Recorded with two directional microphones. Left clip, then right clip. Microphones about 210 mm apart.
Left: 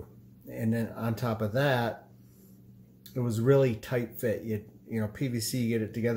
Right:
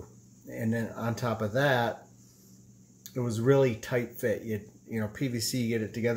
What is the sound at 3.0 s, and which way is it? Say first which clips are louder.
Speech: even; centre (ahead or behind).